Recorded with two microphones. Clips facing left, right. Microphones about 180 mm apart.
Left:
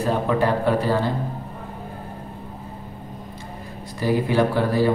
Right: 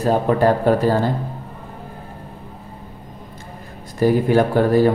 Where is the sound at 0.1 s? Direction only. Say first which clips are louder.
Right 5 dB; 40° right (ahead or behind).